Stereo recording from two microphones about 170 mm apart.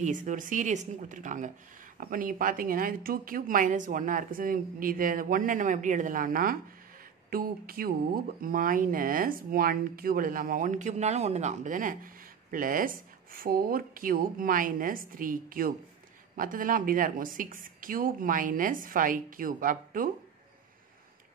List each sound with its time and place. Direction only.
0.0 s speech: 50° right (ahead or behind)